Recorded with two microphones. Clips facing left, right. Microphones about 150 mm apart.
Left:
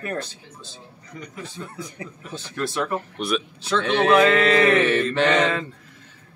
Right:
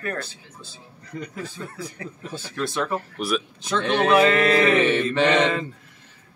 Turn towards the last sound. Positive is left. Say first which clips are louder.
# even
turn(degrees=0)  # may be behind; listen again after turning